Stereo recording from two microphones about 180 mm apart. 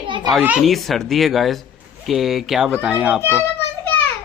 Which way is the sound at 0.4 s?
5° right (ahead or behind).